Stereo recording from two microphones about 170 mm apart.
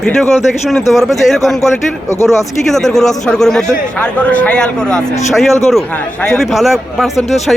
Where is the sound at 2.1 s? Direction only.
15° left (ahead or behind).